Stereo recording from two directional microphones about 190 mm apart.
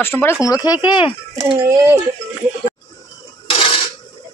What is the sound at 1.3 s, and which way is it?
Speech, 20° right (ahead or behind).